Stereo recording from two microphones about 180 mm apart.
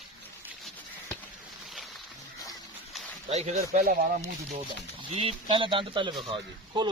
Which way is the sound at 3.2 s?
40° right (ahead or behind).